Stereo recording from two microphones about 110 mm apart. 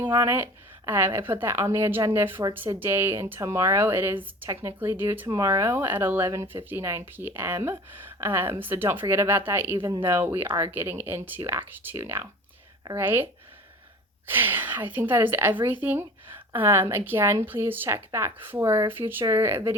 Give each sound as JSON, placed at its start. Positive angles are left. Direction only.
{"t": 0.1, "sound": "speech", "side_deg": -25}
{"t": 14.3, "sound": "a woman's voice", "side_deg": -20}